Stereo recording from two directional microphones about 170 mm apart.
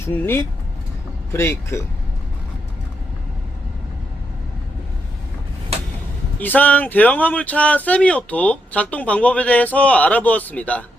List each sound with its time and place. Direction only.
0.0 s speech: 15° left (ahead or behind)
6.4 s speech: 10° left (ahead or behind)